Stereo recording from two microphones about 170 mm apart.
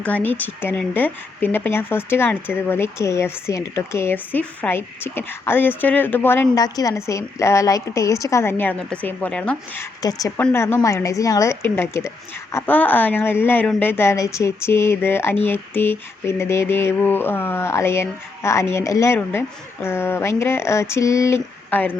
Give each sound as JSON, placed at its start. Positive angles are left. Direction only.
{"t": 0.0, "sound": "speech", "side_deg": 10}
{"t": 10.0, "sound": "a woman's voice", "side_deg": 20}